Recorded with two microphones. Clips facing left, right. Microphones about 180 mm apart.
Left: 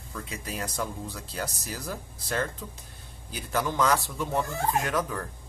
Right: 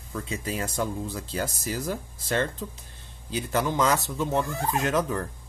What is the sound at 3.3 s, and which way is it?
Speech, 25° right (ahead or behind).